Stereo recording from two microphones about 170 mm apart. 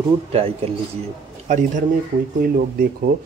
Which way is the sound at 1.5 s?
45° right (ahead or behind).